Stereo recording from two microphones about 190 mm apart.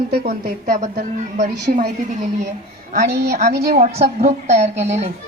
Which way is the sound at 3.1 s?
60° right (ahead or behind).